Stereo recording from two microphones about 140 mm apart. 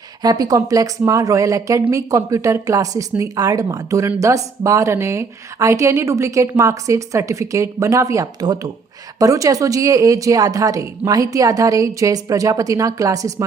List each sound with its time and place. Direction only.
0.2 s speech: 25° right (ahead or behind)